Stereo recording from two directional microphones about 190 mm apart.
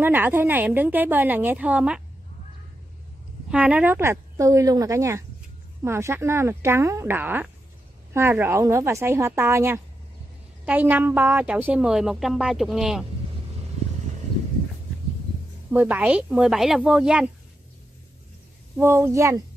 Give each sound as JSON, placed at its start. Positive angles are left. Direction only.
{"t": 0.0, "sound": "a woman's voice", "side_deg": -10}
{"t": 3.4, "sound": "a woman's voice", "side_deg": -5}
{"t": 15.7, "sound": "a woman's voice", "side_deg": -10}
{"t": 18.8, "sound": "a woman's voice", "side_deg": -15}